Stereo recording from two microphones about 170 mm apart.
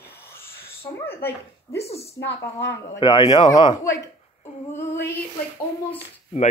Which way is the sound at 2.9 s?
25° left (ahead or behind).